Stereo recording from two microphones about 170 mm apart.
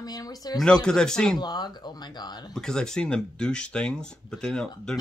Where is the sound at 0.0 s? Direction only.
20° left (ahead or behind).